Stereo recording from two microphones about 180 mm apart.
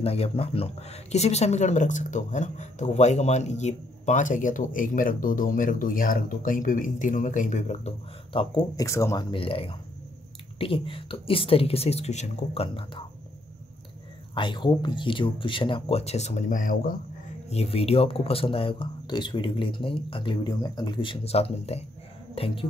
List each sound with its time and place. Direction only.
0.0 s speech: 35° left (ahead or behind)
14.3 s speech: 25° left (ahead or behind); by 16.9 s 45° left (ahead or behind)
17.5 s speech: 35° left (ahead or behind)